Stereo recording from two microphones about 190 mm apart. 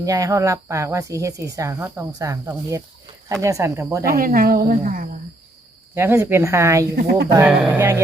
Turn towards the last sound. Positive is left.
turn(degrees=-15)  # may be behind; listen again after turning